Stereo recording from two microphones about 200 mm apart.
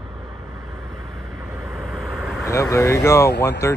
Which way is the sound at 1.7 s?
Centre (ahead or behind).